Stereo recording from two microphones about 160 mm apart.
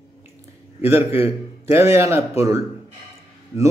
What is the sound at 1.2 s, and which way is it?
Speech, 15° right (ahead or behind).